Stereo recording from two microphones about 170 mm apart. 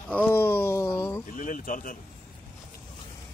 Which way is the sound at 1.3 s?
50° left (ahead or behind).